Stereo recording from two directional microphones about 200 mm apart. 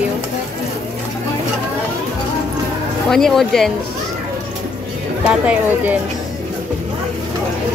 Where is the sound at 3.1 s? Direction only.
Centre (ahead or behind).